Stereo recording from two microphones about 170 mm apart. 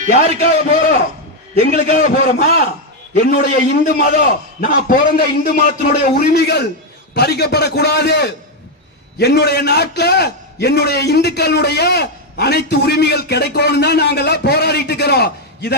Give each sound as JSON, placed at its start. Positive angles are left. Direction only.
{"t": 0.1, "sound": "a man's voice", "side_deg": 65}